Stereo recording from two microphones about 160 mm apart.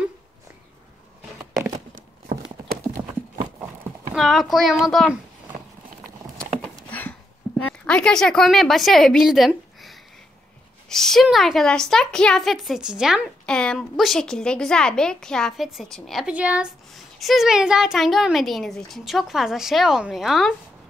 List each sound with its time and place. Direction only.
2.0 s clip-clop: 55° right (ahead or behind)
4.1 s a woman's voice: centre (ahead or behind)
6.6 s a sound: 10° left (ahead or behind)
10.9 s a woman's voice: centre (ahead or behind)